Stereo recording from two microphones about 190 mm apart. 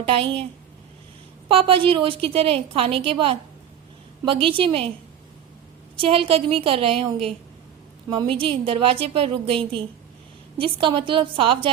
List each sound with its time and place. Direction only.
0.0 s a woman's voice: 30° right (ahead or behind)
1.5 s a woman's voice: 30° right (ahead or behind)
6.0 s a woman's voice: 30° right (ahead or behind)
10.6 s a woman's voice: 25° right (ahead or behind)